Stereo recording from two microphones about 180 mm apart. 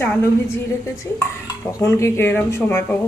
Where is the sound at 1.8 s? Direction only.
15° left (ahead or behind).